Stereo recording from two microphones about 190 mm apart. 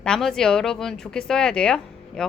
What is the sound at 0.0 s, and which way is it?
A woman's voice, 5° left (ahead or behind).